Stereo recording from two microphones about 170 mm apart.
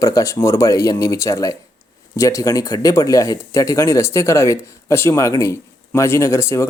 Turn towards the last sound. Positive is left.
turn(degrees=15)  # may be behind; listen again after turning